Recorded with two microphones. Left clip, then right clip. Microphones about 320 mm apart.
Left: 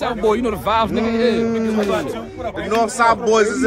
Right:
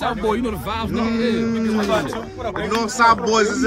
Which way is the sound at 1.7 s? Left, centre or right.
Right.